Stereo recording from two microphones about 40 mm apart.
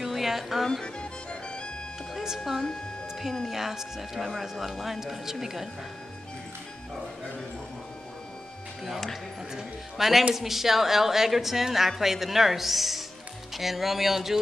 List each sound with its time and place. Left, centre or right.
0.0 s music: centre
0.8 s music: left
2.1 s a woman's voice: centre
4.2 s a woman's voice: centre
9.9 s a woman's voice: centre